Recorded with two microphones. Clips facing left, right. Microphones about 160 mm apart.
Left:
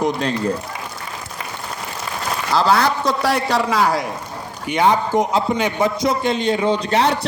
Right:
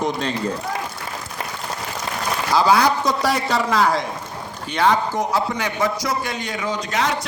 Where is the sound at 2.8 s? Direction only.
5° left (ahead or behind).